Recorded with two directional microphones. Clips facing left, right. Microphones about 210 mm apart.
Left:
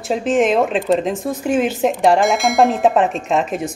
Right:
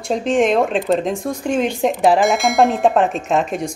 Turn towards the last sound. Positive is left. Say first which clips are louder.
# even
turn(degrees=0)  # may be behind; listen again after turning